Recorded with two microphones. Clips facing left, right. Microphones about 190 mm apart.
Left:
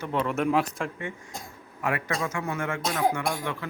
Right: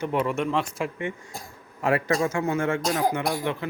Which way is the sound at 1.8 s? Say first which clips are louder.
Right 6 dB; 30° right (ahead or behind).